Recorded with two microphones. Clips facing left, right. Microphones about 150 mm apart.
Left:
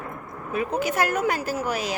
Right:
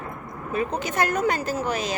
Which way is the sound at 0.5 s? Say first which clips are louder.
Left 1 dB; 5° left (ahead or behind).